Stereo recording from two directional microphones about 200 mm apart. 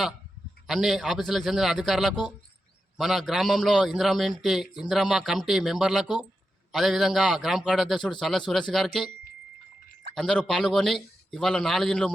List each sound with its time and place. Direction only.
0.7 s a man's voice: centre (ahead or behind)
10.2 s a man's voice: 5° left (ahead or behind)